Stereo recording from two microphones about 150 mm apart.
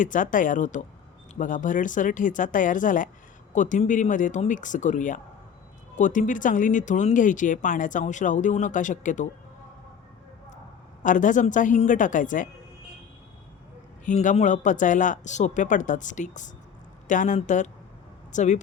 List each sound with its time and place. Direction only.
0.0 s speech: 60° left (ahead or behind)
11.0 s speech: 60° left (ahead or behind)
14.0 s speech: 55° left (ahead or behind)